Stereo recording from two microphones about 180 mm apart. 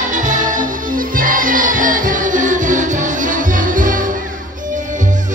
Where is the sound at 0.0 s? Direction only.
45° right (ahead or behind).